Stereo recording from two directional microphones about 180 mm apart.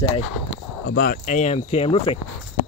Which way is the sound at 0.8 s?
60° left (ahead or behind).